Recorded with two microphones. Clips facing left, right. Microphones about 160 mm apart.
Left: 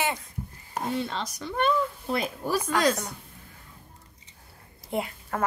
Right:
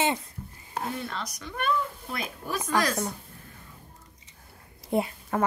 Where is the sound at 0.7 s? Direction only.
25° left (ahead or behind).